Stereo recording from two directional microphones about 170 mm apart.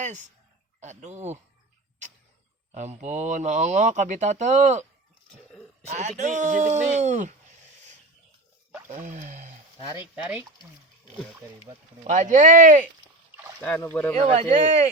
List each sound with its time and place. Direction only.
0.0 s speech: 45° right (ahead or behind)
2.7 s speech: 45° right (ahead or behind)
5.9 s speech: 45° right (ahead or behind)
8.9 s speech: 50° right (ahead or behind)
10.0 s speech: 10° right (ahead or behind)
12.0 s speech: 50° right (ahead or behind)
13.6 s speech: 10° left (ahead or behind)
14.2 s speech: 35° right (ahead or behind)